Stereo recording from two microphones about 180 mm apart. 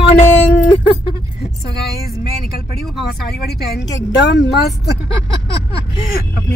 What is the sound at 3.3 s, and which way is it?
Speech, 60° left (ahead or behind).